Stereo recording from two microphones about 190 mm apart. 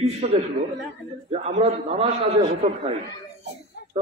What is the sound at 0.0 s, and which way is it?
A man's voice, 35° right (ahead or behind).